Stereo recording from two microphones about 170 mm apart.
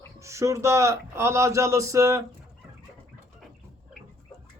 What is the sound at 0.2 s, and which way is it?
Speech, 15° right (ahead or behind).